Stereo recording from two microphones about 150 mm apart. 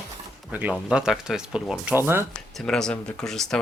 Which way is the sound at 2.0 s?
15° right (ahead or behind).